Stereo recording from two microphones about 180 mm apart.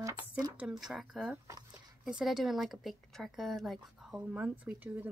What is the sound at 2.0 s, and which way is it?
Speech, 5° right (ahead or behind).